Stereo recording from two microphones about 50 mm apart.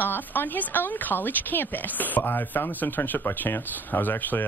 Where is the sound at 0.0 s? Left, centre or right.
Left.